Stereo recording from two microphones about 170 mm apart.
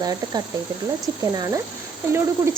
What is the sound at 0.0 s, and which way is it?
Speech, 20° right (ahead or behind).